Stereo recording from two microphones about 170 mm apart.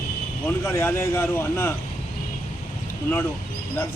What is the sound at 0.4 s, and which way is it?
Speech, 15° left (ahead or behind).